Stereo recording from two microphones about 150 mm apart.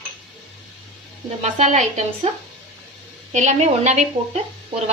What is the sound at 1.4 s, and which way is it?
Speech, 50° right (ahead or behind).